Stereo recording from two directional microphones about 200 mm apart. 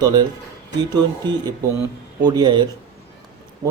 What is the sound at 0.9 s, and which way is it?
A man's voice, 20° right (ahead or behind).